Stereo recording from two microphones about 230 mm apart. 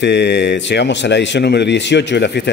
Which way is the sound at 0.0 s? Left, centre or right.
Left.